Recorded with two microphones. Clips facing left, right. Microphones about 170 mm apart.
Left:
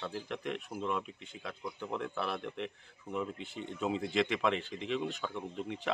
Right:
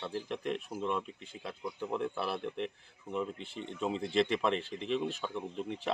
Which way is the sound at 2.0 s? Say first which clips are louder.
Right 1 dB; 30° right (ahead or behind).